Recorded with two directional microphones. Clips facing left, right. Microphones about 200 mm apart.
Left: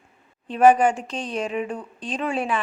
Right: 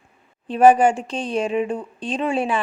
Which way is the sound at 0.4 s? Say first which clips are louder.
Right 2 dB; 30° right (ahead or behind).